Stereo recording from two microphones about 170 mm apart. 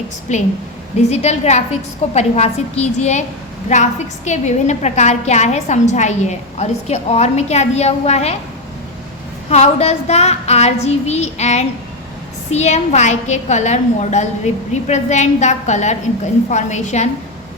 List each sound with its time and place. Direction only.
0.3 s a woman's voice: 45° left (ahead or behind)
4.3 s a woman's voice: 45° left (ahead or behind)
9.5 s a woman's voice: 40° left (ahead or behind)